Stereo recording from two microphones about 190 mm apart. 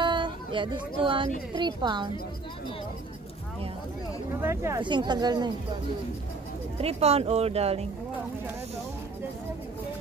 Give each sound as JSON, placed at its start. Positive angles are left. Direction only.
{"t": 0.0, "sound": "a sound", "side_deg": -25}
{"t": 1.5, "sound": "speech", "side_deg": -25}
{"t": 4.4, "sound": "speech", "side_deg": -15}
{"t": 6.8, "sound": "speech", "side_deg": -35}